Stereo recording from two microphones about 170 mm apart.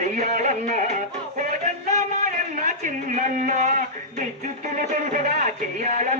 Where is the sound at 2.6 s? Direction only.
45° right (ahead or behind).